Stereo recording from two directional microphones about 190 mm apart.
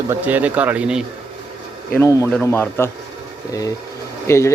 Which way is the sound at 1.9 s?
15° left (ahead or behind).